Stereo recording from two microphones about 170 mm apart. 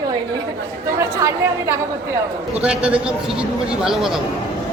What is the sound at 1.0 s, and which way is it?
A woman's voice, 15° right (ahead or behind).